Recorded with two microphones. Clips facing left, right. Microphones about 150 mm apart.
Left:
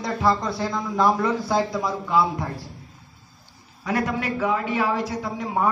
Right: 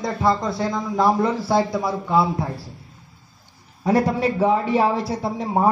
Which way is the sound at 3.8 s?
30° right (ahead or behind).